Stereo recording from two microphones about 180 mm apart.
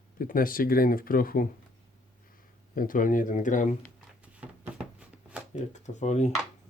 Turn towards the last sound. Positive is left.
turn(degrees=40)  # may be behind; listen again after turning